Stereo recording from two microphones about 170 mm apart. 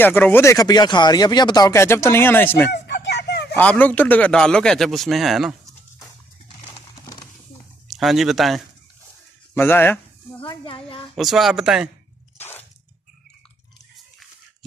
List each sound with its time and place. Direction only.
0.0 s speech: 10° left (ahead or behind)
2.7 s a sound: 80° left
3.5 s a man's voice: 10° left (ahead or behind)
7.9 s a man's voice: centre (ahead or behind)
9.5 s speech: 10° left (ahead or behind)
10.4 s speech: 30° left (ahead or behind)
11.1 s a man's voice: centre (ahead or behind)
12.4 s squish: 10° left (ahead or behind)